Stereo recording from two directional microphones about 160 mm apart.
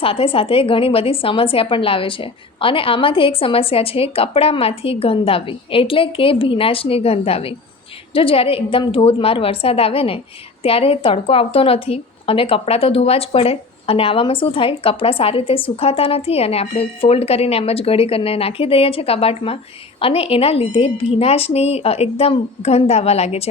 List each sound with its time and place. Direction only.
0.0 s a woman's voice: 35° left (ahead or behind)